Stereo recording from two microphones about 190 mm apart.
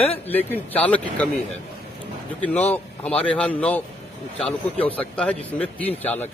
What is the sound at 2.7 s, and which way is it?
A man's voice, 10° left (ahead or behind).